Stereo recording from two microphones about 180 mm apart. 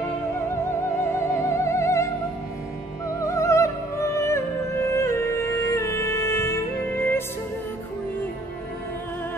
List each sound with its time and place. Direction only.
1.0 s music: 15° left (ahead or behind)
3.2 s music: 15° left (ahead or behind)